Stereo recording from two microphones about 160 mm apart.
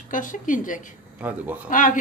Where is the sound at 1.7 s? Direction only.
55° left (ahead or behind).